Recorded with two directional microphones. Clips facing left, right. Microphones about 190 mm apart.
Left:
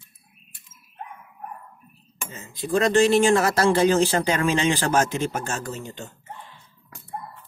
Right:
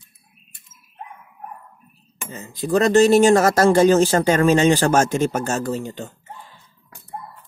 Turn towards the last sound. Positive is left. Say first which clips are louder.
# right 8 dB
turn(degrees=-35)  # may be behind; listen again after turning